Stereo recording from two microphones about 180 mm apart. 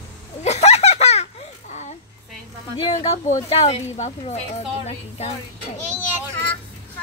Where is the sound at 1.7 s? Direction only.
40° left (ahead or behind).